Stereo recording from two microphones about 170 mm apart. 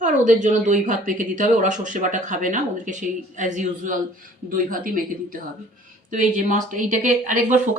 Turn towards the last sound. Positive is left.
turn(degrees=-50)  # may be behind; listen again after turning